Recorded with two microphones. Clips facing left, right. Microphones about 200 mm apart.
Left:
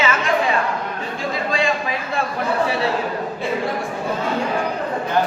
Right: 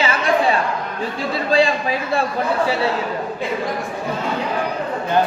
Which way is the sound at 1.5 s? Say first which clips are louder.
Right 8 dB; 35° right (ahead or behind).